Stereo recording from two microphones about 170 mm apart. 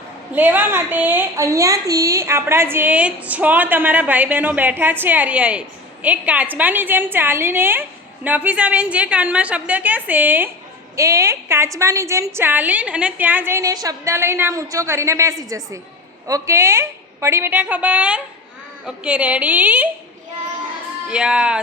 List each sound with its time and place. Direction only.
0.3 s a woman's voice: 10° right (ahead or behind)
21.1 s speech: 5° right (ahead or behind)